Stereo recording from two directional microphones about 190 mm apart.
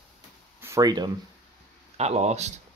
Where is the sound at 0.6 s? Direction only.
15° right (ahead or behind).